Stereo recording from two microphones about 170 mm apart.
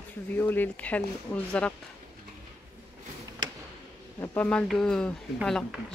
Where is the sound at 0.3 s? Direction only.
10° left (ahead or behind).